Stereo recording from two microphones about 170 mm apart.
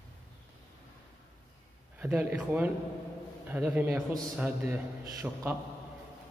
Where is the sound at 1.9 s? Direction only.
10° right (ahead or behind).